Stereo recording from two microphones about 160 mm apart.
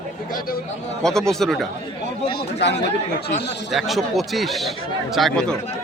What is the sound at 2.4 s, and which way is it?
Speech, 90° left.